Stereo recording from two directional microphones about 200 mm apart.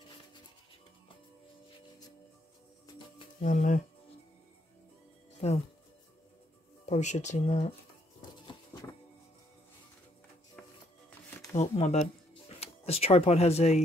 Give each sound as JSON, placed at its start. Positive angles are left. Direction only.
{"t": 3.3, "sound": "speech", "side_deg": 40}
{"t": 5.4, "sound": "speech", "side_deg": 35}
{"t": 6.9, "sound": "speech", "side_deg": 35}
{"t": 11.1, "sound": "music", "side_deg": 10}
{"t": 11.5, "sound": "speech", "side_deg": 35}